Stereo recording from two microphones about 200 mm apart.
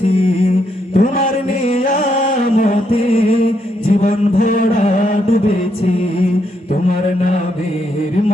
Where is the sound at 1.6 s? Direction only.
40° left (ahead or behind).